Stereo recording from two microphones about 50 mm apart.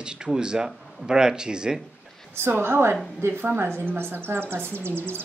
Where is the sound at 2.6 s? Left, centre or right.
Right.